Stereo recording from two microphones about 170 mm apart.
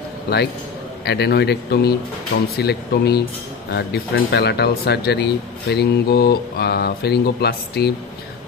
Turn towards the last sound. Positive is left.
turn(degrees=75)  # may be behind; listen again after turning